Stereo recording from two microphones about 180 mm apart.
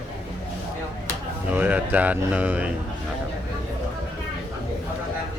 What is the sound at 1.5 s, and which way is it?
Speech, 10° right (ahead or behind).